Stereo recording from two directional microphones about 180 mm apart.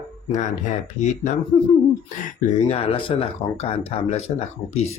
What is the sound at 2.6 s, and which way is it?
Speech, 35° left (ahead or behind).